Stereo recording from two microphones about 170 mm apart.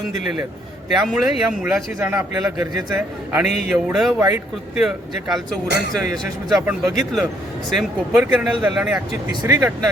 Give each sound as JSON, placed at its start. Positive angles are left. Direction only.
{"t": 0.9, "sound": "a man's voice", "side_deg": 0}
{"t": 5.6, "sound": "speech", "side_deg": -80}
{"t": 6.7, "sound": "a man's voice", "side_deg": 0}